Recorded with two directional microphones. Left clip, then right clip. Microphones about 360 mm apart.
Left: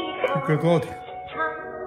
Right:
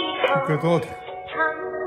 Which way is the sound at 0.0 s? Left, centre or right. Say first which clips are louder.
Right 4 dB; centre.